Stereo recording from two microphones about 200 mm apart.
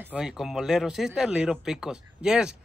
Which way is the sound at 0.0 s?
5° right (ahead or behind).